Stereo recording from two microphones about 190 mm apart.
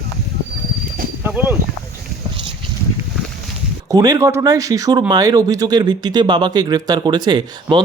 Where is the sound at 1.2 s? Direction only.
10° right (ahead or behind).